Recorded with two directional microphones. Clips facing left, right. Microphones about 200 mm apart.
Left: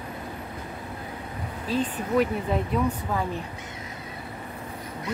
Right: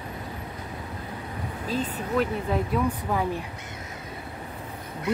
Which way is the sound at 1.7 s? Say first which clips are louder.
Left 2 dB; 40° right (ahead or behind).